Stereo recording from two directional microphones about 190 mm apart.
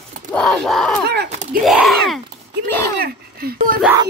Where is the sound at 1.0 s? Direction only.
60° right (ahead or behind).